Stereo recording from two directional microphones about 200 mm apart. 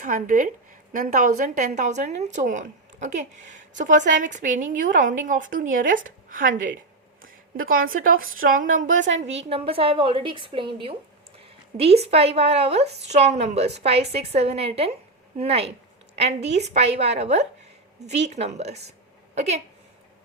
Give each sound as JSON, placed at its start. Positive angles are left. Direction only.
{"t": 0.0, "sound": "a woman's voice", "side_deg": -40}
{"t": 9.0, "sound": "a woman's voice", "side_deg": -70}
{"t": 9.5, "sound": "a woman's voice", "side_deg": -30}